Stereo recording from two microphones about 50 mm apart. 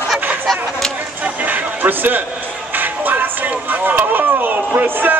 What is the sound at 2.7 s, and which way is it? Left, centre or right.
Speech, right.